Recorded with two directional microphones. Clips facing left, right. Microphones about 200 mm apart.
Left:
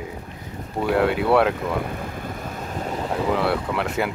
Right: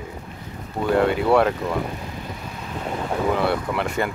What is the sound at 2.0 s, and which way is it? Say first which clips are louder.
Vehicle: left 2 dB; 50° left (ahead or behind).